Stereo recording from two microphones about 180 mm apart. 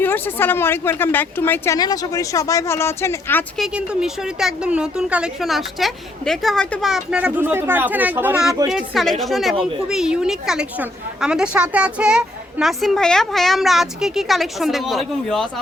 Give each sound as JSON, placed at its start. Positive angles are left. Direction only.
{"t": 0.0, "sound": "a woman's voice", "side_deg": 10}
{"t": 3.6, "sound": "a woman's voice", "side_deg": 0}